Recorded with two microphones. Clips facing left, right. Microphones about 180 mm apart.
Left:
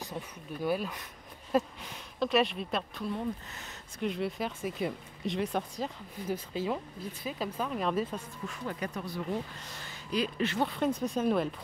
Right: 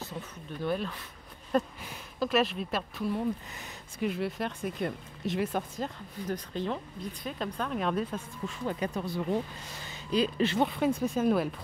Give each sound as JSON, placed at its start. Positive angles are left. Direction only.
{"t": 0.0, "sound": "speech", "side_deg": 15}
{"t": 8.5, "sound": "speech", "side_deg": -25}
{"t": 9.8, "sound": "a sound", "side_deg": -30}
{"t": 10.8, "sound": "speech", "side_deg": -5}